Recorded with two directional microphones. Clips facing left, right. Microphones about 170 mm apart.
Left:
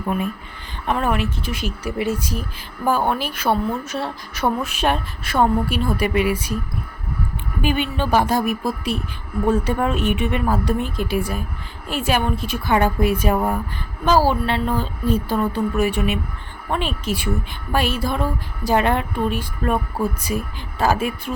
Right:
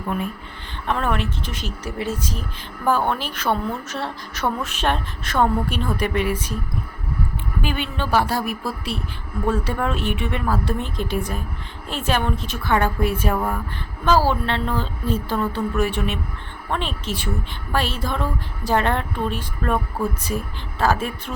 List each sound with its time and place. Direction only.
0.9 s a woman's voice: 10° left (ahead or behind)
7.6 s a woman's voice: 15° left (ahead or behind)